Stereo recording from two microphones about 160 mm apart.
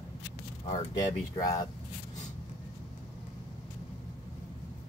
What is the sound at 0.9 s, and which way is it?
Speech, 25° left (ahead or behind).